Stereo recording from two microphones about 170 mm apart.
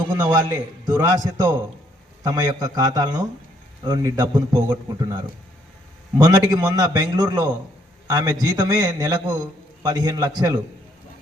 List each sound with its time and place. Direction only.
0.2 s a man's voice: 25° right (ahead or behind)
6.1 s a man's voice: 20° right (ahead or behind)